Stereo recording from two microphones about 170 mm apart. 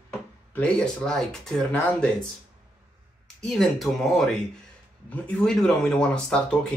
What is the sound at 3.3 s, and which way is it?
Speech, centre (ahead or behind).